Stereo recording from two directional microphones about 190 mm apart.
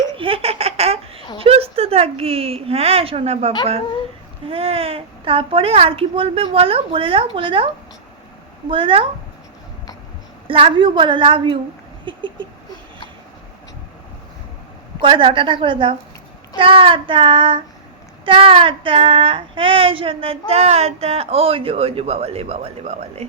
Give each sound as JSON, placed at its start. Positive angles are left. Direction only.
{"t": 0.2, "sound": "baby laughter", "side_deg": -30}
{"t": 1.4, "sound": "a woman's voice", "side_deg": -30}
{"t": 8.7, "sound": "a child's voice", "side_deg": -25}
{"t": 10.4, "sound": "a child's voice", "side_deg": -30}
{"t": 12.0, "sound": "a sound", "side_deg": -25}
{"t": 15.0, "sound": "a child's voice", "side_deg": -30}